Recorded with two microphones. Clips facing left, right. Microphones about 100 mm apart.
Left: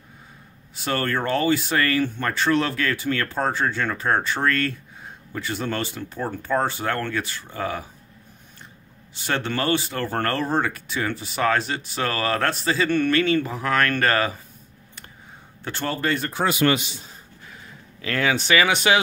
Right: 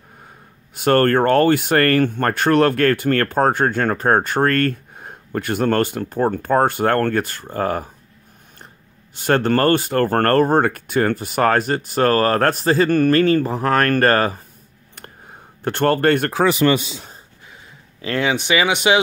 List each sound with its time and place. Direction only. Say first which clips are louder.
0.7 s speech: right 10 dB; 55° right (ahead or behind)
9.1 s speech: right 9 dB; 50° right (ahead or behind)
15.6 s speech: right 10 dB; 55° right (ahead or behind)
18.0 s speech: right 3 dB; 20° right (ahead or behind)